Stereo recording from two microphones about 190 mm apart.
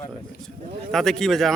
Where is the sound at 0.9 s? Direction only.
Centre (ahead or behind).